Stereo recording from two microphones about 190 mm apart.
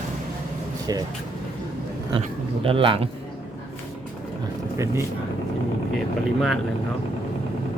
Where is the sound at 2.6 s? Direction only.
30° right (ahead or behind).